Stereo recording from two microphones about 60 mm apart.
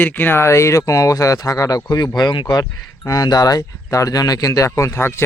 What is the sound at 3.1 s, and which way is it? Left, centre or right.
Speech, left.